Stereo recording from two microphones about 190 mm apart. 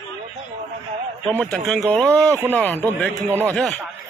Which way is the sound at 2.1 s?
15° right (ahead or behind).